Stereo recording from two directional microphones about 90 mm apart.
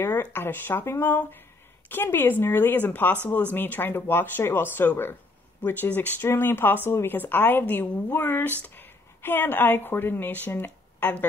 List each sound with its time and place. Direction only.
0.0 s a woman's voice: 20° left (ahead or behind)